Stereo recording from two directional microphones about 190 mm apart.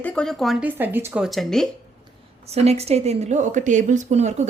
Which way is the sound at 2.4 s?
35° right (ahead or behind).